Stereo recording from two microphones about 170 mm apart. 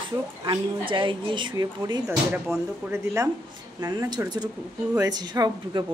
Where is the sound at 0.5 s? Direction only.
30° right (ahead or behind).